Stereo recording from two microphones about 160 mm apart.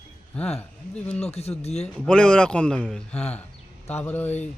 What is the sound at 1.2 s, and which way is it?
Speech, 40° left (ahead or behind).